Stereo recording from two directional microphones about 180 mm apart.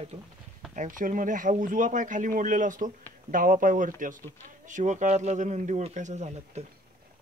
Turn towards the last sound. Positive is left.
turn(degrees=-40)  # may be behind; listen again after turning